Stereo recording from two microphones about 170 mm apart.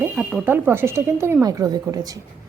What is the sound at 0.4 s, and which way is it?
A woman's voice, 15° right (ahead or behind).